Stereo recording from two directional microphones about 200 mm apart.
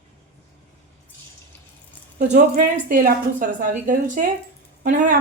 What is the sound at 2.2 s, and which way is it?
A woman's voice, 40° right (ahead or behind).